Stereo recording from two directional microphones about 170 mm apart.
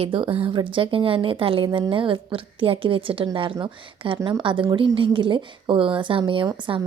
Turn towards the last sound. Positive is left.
turn(degrees=-30)  # may be behind; listen again after turning